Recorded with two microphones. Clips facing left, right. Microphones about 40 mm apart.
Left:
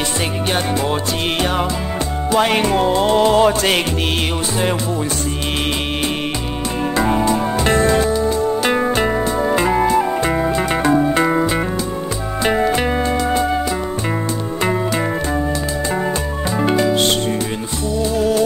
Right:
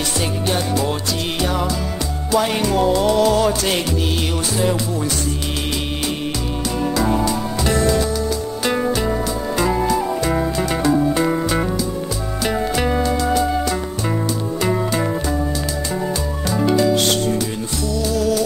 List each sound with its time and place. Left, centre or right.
2.3 s music: left
7.0 s music: left
14.6 s music: left
16.5 s music: left